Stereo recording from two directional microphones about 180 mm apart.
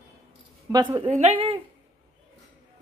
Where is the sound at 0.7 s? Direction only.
20° right (ahead or behind).